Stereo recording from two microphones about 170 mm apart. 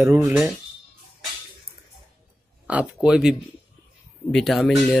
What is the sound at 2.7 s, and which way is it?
Speech, 5° right (ahead or behind).